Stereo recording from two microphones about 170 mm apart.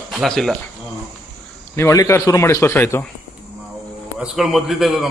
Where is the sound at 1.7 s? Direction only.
15° left (ahead or behind).